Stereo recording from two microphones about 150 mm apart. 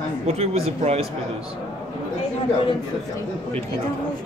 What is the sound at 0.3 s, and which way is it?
Speech, 45° right (ahead or behind).